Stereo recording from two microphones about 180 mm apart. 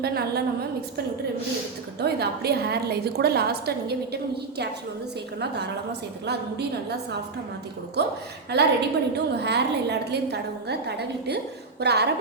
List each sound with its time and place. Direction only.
0.0 s a woman's voice: 60° right (ahead or behind)
2.0 s a woman's voice: 65° right (ahead or behind)
8.0 s a woman's voice: 65° right (ahead or behind)